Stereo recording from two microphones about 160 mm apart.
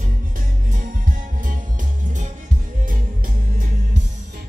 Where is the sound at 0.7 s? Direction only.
55° right (ahead or behind).